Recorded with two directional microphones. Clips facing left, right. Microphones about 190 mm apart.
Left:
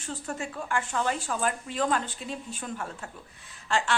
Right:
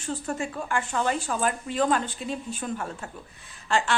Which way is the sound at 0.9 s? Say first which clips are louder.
Right 4 dB; 15° right (ahead or behind).